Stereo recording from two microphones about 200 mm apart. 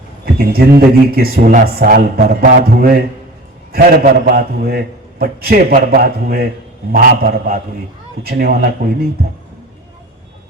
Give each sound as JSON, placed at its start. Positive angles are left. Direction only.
{"t": 0.3, "sound": "speech", "side_deg": -50}